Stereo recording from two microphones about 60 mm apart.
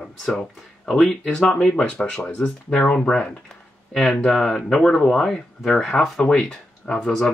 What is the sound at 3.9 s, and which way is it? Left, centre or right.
Speech, centre.